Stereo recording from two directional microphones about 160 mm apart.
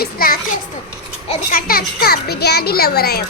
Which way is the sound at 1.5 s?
65° left (ahead or behind).